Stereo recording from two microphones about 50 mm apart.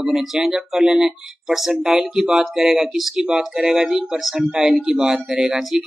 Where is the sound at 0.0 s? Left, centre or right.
Centre.